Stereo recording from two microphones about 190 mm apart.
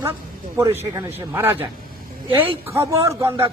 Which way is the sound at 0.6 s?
15° right (ahead or behind).